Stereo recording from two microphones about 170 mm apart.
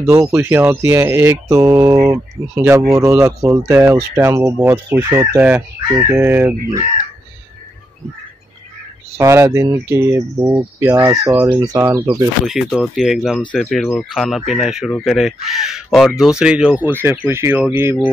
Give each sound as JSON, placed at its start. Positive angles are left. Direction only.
{"t": 0.0, "sound": "speech", "side_deg": -20}
{"t": 2.9, "sound": "speech", "side_deg": -20}
{"t": 9.2, "sound": "speech", "side_deg": -15}
{"t": 12.4, "sound": "speech", "side_deg": 0}